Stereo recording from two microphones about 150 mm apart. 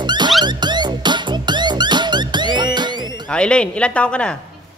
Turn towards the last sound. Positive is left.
turn(degrees=5)  # may be behind; listen again after turning